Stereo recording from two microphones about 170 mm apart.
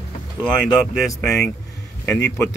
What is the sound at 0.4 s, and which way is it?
Speech, 5° left (ahead or behind).